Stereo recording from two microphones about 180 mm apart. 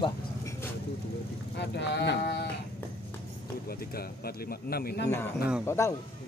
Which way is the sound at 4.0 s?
55° left (ahead or behind).